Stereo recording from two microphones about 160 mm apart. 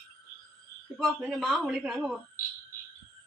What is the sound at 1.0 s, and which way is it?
A man's voice, centre (ahead or behind).